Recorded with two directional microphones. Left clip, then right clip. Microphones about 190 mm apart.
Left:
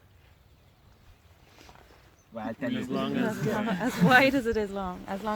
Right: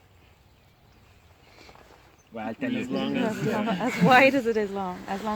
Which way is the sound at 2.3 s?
25° left (ahead or behind).